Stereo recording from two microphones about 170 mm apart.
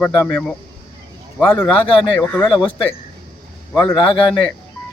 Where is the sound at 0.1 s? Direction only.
20° left (ahead or behind).